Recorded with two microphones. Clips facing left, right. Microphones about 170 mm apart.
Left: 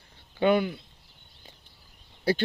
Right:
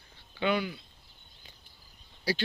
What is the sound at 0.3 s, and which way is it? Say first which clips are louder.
Speech: left 6 dB; 50° left (ahead or behind).